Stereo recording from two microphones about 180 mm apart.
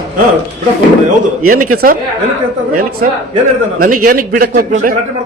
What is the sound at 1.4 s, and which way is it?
Speech, 50° right (ahead or behind).